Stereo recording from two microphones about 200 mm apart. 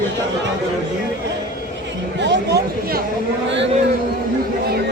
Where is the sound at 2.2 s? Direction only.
60° right (ahead or behind).